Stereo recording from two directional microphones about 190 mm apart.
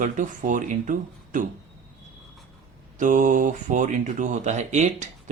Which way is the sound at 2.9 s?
45° right (ahead or behind).